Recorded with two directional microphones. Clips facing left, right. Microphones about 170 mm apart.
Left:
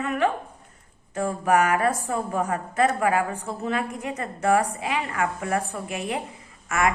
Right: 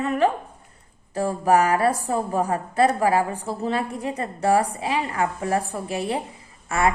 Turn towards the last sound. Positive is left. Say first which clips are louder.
# right 2 dB
turn(degrees=-30)  # may be behind; listen again after turning